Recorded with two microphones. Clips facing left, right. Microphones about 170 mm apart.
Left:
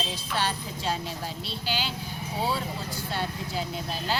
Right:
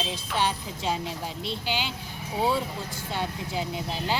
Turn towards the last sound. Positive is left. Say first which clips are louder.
# right 1 dB
turn(degrees=-15)  # may be behind; listen again after turning